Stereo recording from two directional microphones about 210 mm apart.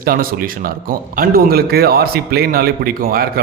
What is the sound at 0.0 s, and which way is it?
A man's voice, 45° right (ahead or behind).